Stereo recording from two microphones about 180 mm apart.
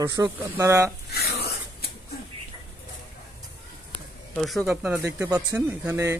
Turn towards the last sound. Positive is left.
turn(degrees=-15)  # may be behind; listen again after turning